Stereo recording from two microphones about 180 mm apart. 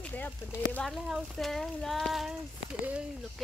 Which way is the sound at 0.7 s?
Centre (ahead or behind).